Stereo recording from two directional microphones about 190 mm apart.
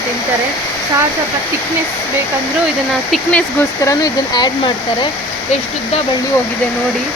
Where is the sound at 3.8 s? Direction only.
20° left (ahead or behind).